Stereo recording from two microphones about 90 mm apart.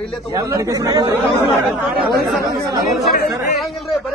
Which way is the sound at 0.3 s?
35° right (ahead or behind).